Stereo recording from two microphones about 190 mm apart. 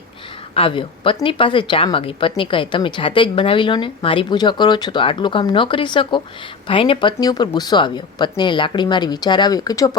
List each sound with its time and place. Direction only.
0.5 s speech: 30° left (ahead or behind)